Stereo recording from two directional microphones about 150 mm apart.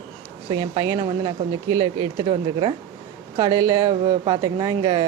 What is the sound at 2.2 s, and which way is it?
Speech, 35° right (ahead or behind).